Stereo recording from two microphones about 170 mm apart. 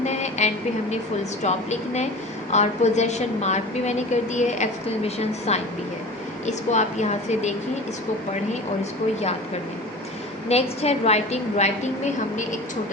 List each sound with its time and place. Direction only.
0.0 s a sound: 40° left (ahead or behind)
1.4 s a woman's voice: 40° left (ahead or behind)
10.5 s a woman's voice: 40° left (ahead or behind)